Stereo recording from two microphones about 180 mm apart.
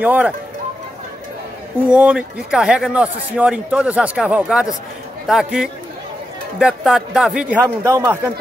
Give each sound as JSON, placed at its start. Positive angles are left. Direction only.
{"t": 0.0, "sound": "speech", "side_deg": -10}
{"t": 1.9, "sound": "a man's voice", "side_deg": -5}
{"t": 7.8, "sound": "speech", "side_deg": -20}